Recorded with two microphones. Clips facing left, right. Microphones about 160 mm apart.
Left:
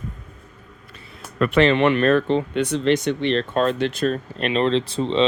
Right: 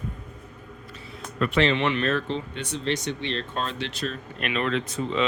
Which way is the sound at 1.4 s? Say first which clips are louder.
Left 6 dB; 55° left (ahead or behind).